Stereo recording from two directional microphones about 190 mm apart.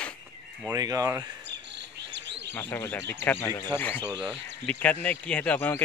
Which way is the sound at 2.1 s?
65° right (ahead or behind).